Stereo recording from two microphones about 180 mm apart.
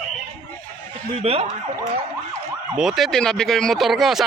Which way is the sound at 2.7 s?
5° right (ahead or behind).